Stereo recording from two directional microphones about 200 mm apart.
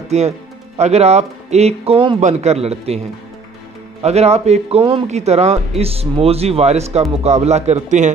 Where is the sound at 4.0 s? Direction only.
30° right (ahead or behind).